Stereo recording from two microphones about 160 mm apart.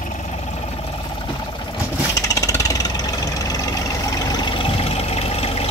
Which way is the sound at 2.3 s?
20° left (ahead or behind).